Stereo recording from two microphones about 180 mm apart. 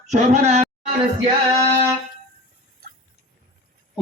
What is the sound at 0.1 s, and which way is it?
Speech, 40° right (ahead or behind).